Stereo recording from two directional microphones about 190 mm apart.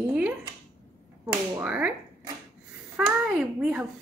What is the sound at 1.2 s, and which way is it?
Speech, 5° right (ahead or behind).